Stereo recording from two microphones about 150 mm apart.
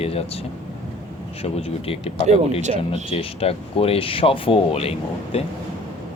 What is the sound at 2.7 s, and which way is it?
Speech, 45° right (ahead or behind).